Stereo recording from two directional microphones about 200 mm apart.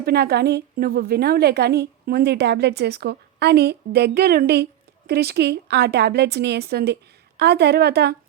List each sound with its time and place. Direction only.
0.0 s a woman's voice: 55° right (ahead or behind)